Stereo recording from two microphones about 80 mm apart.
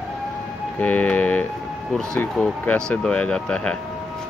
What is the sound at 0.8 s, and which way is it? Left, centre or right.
Speech, centre.